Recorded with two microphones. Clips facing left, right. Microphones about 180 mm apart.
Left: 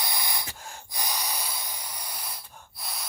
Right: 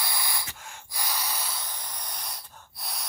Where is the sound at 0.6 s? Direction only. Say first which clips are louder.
Left 2 dB; 35° left (ahead or behind).